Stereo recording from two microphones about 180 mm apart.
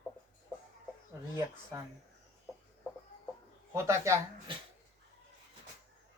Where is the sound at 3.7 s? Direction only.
15° right (ahead or behind).